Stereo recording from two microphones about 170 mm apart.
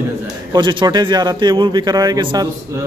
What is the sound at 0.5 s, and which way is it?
A man's voice, 25° right (ahead or behind).